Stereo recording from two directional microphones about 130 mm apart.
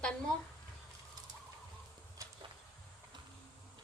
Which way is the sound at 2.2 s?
25° right (ahead or behind).